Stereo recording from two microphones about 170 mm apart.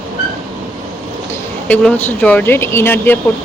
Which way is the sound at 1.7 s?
10° left (ahead or behind).